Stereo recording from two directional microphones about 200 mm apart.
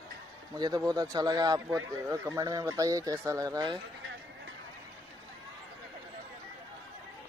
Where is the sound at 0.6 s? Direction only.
20° right (ahead or behind).